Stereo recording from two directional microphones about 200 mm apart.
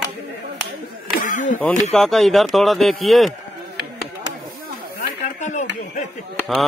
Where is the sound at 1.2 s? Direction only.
40° left (ahead or behind).